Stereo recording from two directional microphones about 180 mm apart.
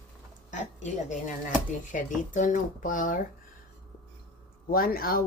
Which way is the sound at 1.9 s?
45° left (ahead or behind).